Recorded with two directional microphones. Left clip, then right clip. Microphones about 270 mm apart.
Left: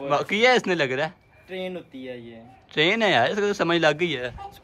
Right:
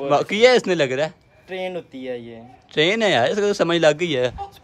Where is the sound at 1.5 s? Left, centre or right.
Right.